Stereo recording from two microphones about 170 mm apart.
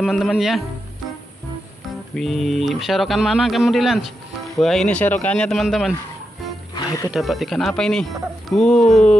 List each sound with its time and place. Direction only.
0.0 s speech: centre (ahead or behind)
2.1 s speech: centre (ahead or behind)
6.7 s music: 20° left (ahead or behind)
7.1 s speech: centre (ahead or behind)